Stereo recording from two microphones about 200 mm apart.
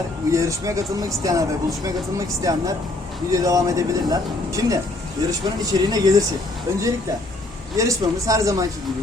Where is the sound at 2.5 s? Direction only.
15° right (ahead or behind).